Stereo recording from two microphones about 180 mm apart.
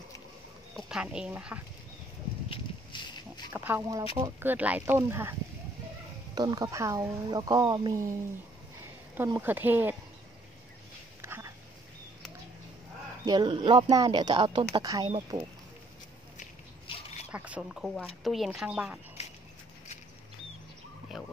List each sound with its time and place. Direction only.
0.7 s speech: 5° right (ahead or behind)
2.5 s a sound: 25° left (ahead or behind)
3.5 s speech: 10° right (ahead or behind)
6.3 s speech: 20° right (ahead or behind)
9.4 s speech: 10° right (ahead or behind)
11.1 s a sound: 15° right (ahead or behind)
13.2 s speech: 25° right (ahead or behind)
15.3 s speech: 30° right (ahead or behind)
16.8 s a sound: 30° left (ahead or behind)
17.3 s speech: 5° right (ahead or behind)
19.2 s a sound: 35° left (ahead or behind)
21.1 s speech: centre (ahead or behind)